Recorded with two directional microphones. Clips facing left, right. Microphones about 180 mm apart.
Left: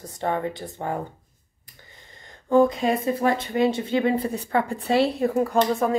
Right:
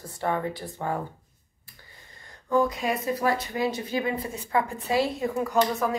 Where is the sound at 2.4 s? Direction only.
25° left (ahead or behind).